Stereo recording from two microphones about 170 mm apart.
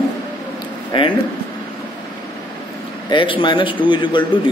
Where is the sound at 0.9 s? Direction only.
30° left (ahead or behind).